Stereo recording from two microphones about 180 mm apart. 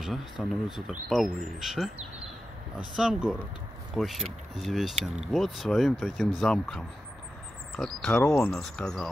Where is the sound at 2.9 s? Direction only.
Centre (ahead or behind).